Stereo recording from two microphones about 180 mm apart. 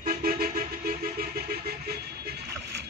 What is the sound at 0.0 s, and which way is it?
Vehicle, 55° right (ahead or behind).